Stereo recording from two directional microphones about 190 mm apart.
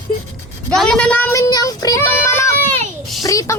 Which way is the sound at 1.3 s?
15° left (ahead or behind).